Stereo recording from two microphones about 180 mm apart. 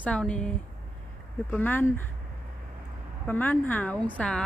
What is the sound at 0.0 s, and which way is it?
A woman's voice, 5° left (ahead or behind).